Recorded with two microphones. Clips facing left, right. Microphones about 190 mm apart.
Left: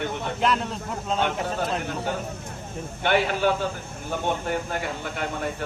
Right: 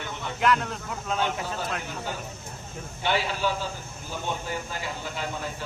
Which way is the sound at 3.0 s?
55° left (ahead or behind).